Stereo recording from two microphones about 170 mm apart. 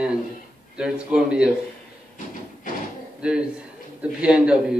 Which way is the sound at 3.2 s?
5° right (ahead or behind).